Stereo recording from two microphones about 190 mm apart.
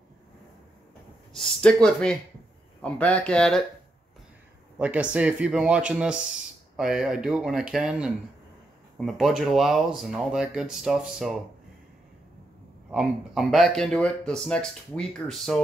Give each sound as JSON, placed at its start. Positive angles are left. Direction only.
{"t": 1.3, "sound": "speech", "side_deg": 5}
{"t": 4.7, "sound": "speech", "side_deg": -5}
{"t": 12.9, "sound": "speech", "side_deg": 0}